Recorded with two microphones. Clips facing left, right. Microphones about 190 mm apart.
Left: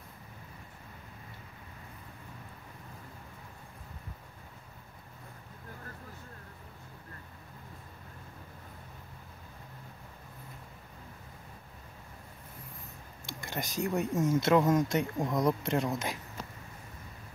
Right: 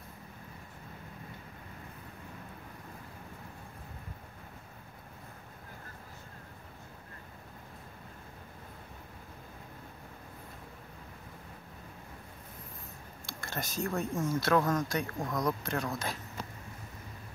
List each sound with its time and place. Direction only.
13.3 s speech: 15° left (ahead or behind)